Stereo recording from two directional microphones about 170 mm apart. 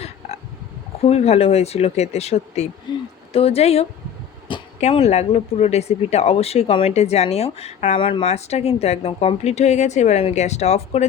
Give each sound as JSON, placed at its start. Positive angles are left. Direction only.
{"t": 1.0, "sound": "speech", "side_deg": 40}
{"t": 2.9, "sound": "speech", "side_deg": 25}